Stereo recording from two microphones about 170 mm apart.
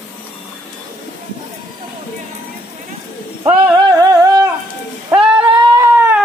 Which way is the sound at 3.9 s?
20° right (ahead or behind).